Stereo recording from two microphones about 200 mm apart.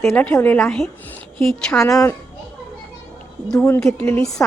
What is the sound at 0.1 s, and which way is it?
A woman's voice, 10° left (ahead or behind).